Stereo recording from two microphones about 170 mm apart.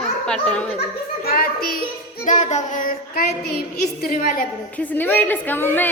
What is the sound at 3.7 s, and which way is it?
Speech, 60° left (ahead or behind).